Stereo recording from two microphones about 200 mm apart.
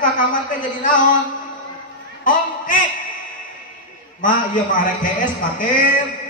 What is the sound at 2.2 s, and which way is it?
Speech, 40° left (ahead or behind).